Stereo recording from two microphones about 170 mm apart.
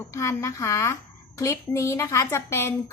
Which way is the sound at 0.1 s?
15° left (ahead or behind).